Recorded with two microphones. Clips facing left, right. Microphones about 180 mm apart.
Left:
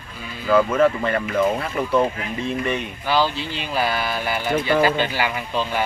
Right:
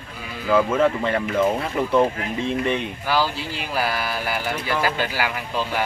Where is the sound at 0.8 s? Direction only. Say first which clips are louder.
Left 1 dB; 20° right (ahead or behind).